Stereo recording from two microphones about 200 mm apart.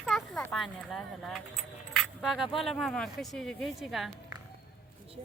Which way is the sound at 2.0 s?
Centre (ahead or behind).